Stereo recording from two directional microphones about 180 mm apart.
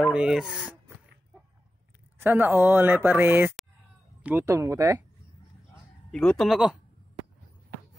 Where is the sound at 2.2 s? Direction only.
10° right (ahead or behind).